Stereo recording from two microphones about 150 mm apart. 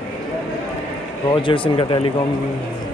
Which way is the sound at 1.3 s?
30° left (ahead or behind).